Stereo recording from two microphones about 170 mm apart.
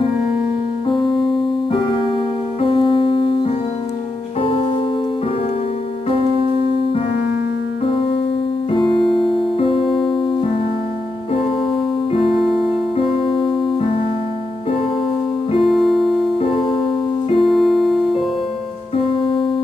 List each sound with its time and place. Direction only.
2.6 s music: 30° left (ahead or behind)
6.1 s keyboard: 30° right (ahead or behind)
8.7 s keyboard: 30° left (ahead or behind)
9.1 s music: 30° left (ahead or behind)
9.8 s keyboard: centre (ahead or behind)
13.3 s keyboard: 30° left (ahead or behind)
15.6 s keyboard: centre (ahead or behind)
16.3 s music: 30° left (ahead or behind)
17.5 s keyboard: centre (ahead or behind)